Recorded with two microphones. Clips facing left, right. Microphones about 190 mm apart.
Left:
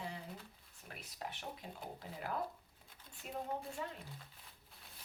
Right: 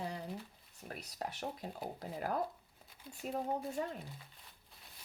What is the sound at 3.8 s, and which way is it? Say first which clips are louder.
Speech: right 6 dB; 45° right (ahead or behind).